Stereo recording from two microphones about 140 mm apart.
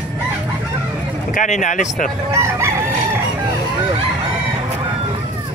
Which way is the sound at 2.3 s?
20° right (ahead or behind).